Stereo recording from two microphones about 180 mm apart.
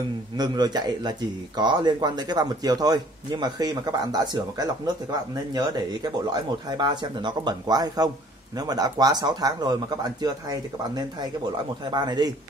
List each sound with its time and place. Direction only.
0.4 s speech: 25° right (ahead or behind)